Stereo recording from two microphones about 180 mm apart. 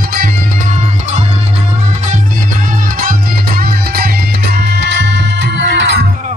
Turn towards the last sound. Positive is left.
turn(degrees=-75)  # may be behind; listen again after turning